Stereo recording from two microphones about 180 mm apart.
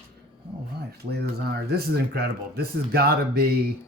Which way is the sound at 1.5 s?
65° right (ahead or behind).